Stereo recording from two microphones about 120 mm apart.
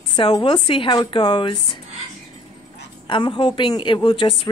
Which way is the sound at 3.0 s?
40° left (ahead or behind).